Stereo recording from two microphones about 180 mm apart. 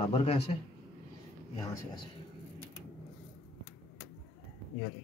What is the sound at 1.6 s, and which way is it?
Speech, 20° left (ahead or behind).